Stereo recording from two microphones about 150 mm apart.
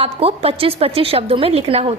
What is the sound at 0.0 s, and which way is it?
A woman's voice, 40° right (ahead or behind).